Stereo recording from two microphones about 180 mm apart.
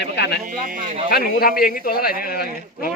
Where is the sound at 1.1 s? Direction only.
55° left (ahead or behind).